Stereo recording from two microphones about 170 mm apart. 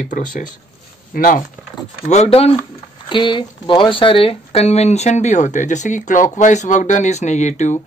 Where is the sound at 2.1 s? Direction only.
35° left (ahead or behind).